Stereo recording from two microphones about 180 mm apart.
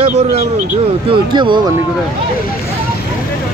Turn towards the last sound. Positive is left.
turn(degrees=-25)  # may be behind; listen again after turning